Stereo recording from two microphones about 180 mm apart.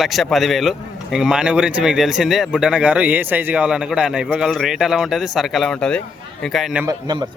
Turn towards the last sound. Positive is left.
turn(degrees=-25)  # may be behind; listen again after turning